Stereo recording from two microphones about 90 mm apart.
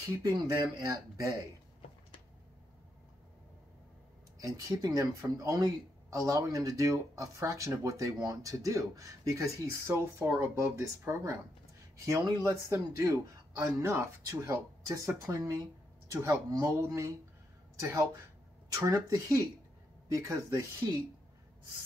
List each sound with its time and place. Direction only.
0.2 s speech: 45° right (ahead or behind)
4.4 s speech: 45° right (ahead or behind)
16.7 s speech: 30° right (ahead or behind)